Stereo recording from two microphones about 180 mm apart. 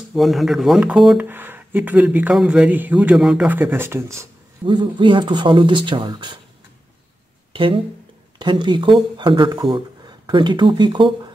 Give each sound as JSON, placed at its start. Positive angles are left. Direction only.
{"t": 0.1, "sound": "speech", "side_deg": 0}
{"t": 4.6, "sound": "speech", "side_deg": -25}
{"t": 7.5, "sound": "speech", "side_deg": -30}